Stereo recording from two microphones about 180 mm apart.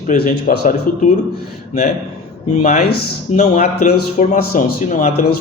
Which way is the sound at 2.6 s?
40° left (ahead or behind).